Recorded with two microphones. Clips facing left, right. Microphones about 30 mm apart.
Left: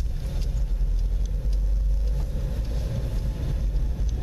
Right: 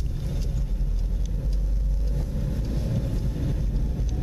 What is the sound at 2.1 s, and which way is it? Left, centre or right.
Vehicle, centre.